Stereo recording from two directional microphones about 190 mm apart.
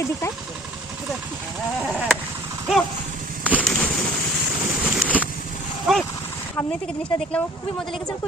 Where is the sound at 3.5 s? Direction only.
Centre (ahead or behind).